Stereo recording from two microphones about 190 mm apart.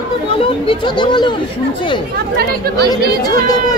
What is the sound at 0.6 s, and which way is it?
Speech, 25° left (ahead or behind).